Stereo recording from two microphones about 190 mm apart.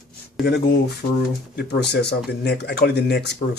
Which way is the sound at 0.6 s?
55° left (ahead or behind).